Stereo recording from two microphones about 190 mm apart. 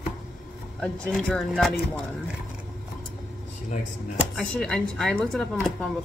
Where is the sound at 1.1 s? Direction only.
Centre (ahead or behind).